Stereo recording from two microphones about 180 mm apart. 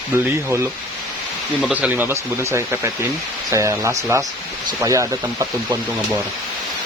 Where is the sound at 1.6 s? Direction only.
5° right (ahead or behind).